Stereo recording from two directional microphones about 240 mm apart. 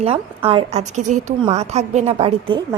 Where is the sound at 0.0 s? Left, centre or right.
Right.